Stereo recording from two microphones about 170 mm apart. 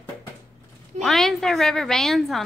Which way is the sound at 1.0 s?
Centre (ahead or behind).